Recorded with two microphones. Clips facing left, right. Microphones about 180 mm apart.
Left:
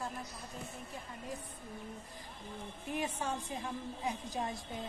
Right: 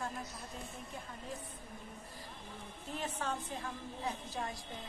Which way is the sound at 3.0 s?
10° left (ahead or behind).